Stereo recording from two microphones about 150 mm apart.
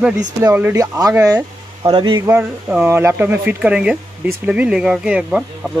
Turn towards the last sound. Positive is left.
turn(degrees=-5)  # may be behind; listen again after turning